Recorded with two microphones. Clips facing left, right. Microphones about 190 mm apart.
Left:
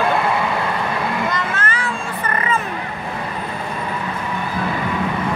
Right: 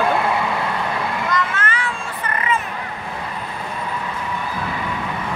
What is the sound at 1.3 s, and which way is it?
Vehicle, 35° left (ahead or behind).